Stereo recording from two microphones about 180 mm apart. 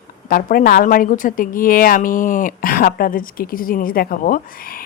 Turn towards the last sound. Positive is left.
turn(degrees=50)  # may be behind; listen again after turning